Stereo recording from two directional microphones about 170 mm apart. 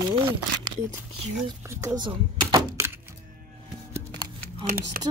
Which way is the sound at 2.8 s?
15° right (ahead or behind).